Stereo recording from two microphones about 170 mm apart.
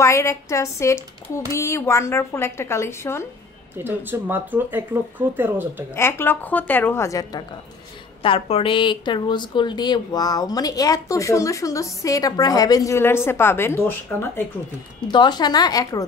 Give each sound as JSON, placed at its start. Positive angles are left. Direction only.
{"t": 0.0, "sound": "a woman's voice", "side_deg": 15}
{"t": 3.7, "sound": "speech", "side_deg": -10}
{"t": 5.9, "sound": "a woman's voice", "side_deg": 15}
{"t": 8.2, "sound": "speech", "side_deg": 35}
{"t": 15.0, "sound": "speech", "side_deg": 25}